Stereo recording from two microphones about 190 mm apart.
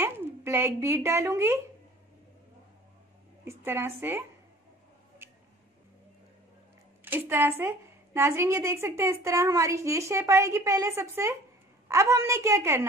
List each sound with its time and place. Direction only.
0.0 s speech: 10° right (ahead or behind)
3.4 s a woman's voice: 15° right (ahead or behind)
7.1 s a woman's voice: 10° right (ahead or behind)